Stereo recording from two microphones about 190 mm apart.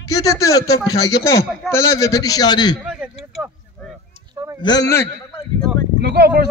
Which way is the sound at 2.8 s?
5° right (ahead or behind).